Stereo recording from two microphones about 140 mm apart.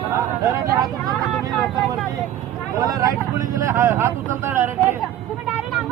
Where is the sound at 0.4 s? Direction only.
25° right (ahead or behind).